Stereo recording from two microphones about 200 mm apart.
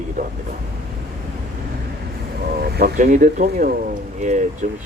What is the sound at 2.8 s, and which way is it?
Speech, 45° right (ahead or behind).